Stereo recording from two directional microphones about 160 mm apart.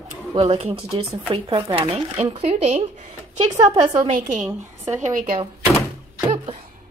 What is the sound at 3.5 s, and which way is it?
Speech, 25° right (ahead or behind).